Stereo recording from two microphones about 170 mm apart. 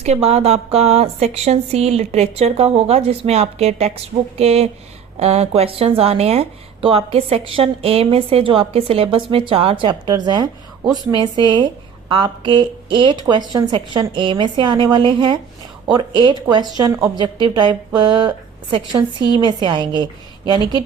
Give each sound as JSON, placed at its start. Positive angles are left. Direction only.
{"t": 0.0, "sound": "a woman's voice", "side_deg": -40}